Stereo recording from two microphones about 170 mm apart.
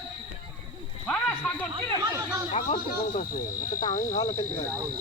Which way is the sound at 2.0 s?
20° right (ahead or behind).